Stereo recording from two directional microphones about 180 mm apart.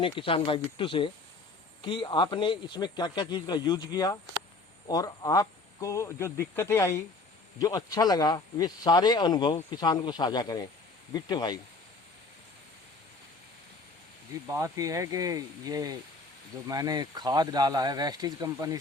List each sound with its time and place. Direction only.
0.0 s speech: 30° left (ahead or behind)
14.5 s speech: 15° right (ahead or behind)